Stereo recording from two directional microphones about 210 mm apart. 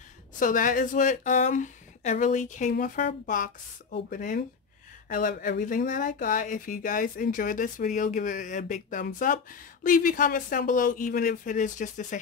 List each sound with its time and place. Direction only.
0.4 s speech: 40° left (ahead or behind)